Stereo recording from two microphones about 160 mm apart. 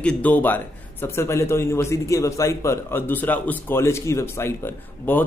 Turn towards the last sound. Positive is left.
turn(degrees=15)  # may be behind; listen again after turning